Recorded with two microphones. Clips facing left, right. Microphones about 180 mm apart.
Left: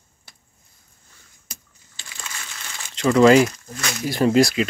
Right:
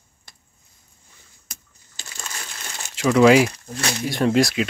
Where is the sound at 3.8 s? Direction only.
30° right (ahead or behind).